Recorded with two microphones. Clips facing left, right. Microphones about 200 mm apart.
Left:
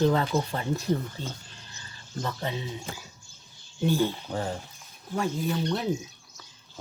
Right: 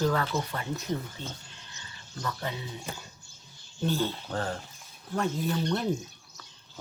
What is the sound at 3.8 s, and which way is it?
Speech, 15° left (ahead or behind).